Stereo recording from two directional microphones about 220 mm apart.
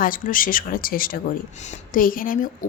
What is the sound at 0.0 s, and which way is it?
A woman's voice, 40° left (ahead or behind).